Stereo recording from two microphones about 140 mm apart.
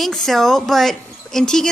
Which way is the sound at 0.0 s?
5° left (ahead or behind).